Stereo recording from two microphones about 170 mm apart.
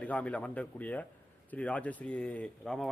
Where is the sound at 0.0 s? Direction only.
5° left (ahead or behind).